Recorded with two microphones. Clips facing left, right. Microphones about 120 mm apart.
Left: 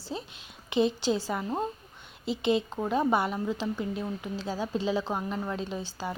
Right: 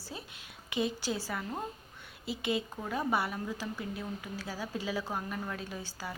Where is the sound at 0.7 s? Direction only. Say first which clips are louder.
Left 7 dB; 25° left (ahead or behind).